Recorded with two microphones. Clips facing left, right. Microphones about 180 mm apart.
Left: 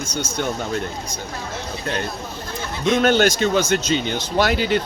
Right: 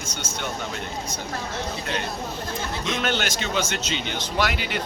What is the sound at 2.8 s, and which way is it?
A man's voice, 40° left (ahead or behind).